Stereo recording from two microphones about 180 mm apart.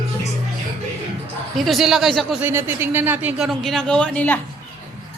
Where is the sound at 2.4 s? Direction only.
10° right (ahead or behind); by 4.4 s 10° left (ahead or behind).